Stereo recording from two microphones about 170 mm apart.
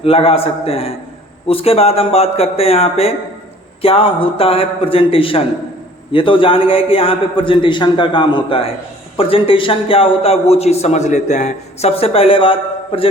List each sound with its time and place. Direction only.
0.0 s a man's voice: 35° left (ahead or behind)